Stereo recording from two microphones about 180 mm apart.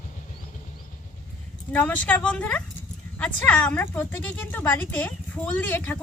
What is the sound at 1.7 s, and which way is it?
Speech, 10° left (ahead or behind).